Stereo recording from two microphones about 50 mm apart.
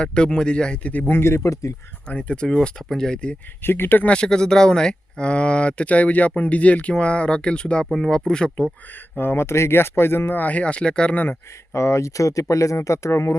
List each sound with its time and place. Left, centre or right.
0.0 s speech: centre
1.0 s speech: left
2.0 s speech: left
3.6 s speech: left
4.0 s speech: centre
7.9 s speech: centre
9.1 s speech: left
10.4 s speech: left
11.1 s speech: left
11.7 s speech: left